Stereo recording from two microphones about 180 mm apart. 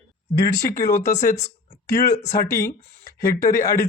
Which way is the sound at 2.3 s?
15° left (ahead or behind).